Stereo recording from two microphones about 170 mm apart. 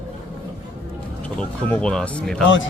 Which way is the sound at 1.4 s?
5° left (ahead or behind).